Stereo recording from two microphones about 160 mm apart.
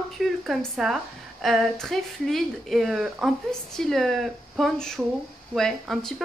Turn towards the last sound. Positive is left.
turn(degrees=0)  # may be behind; listen again after turning